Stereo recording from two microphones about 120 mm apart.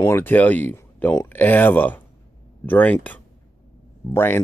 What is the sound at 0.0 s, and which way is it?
Speech, 20° left (ahead or behind).